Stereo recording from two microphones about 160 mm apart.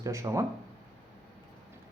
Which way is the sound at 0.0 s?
20° right (ahead or behind).